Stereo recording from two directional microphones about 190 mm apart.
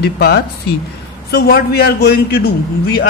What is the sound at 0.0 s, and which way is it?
A man's voice, 60° left (ahead or behind).